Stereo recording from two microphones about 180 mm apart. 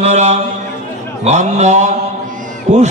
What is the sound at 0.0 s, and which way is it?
Speech, 40° right (ahead or behind).